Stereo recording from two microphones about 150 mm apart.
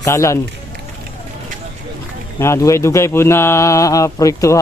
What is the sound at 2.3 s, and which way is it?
Speech, 20° left (ahead or behind).